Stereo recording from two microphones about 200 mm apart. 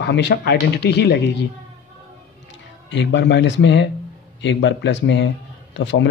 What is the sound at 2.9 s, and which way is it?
Speech, 60° left (ahead or behind).